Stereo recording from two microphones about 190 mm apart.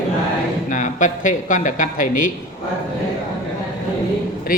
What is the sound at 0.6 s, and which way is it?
Speech, 40° left (ahead or behind).